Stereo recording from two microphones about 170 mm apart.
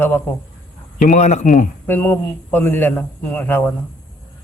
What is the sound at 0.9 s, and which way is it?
Speech, 50° left (ahead or behind).